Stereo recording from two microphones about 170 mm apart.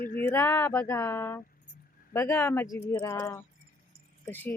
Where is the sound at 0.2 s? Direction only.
10° left (ahead or behind).